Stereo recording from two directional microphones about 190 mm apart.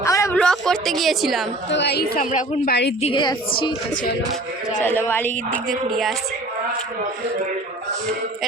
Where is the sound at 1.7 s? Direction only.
65° left (ahead or behind).